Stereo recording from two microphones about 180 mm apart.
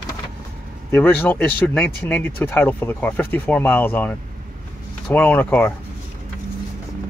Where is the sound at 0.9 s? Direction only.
10° left (ahead or behind).